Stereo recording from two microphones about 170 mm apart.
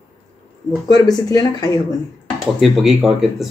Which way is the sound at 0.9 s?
20° left (ahead or behind).